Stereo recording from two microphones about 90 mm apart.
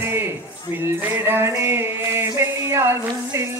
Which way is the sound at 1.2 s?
25° right (ahead or behind).